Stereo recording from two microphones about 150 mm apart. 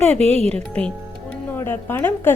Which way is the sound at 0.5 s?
10° left (ahead or behind).